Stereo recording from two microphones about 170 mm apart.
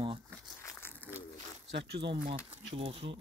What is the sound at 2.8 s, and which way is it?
Speech, 35° right (ahead or behind).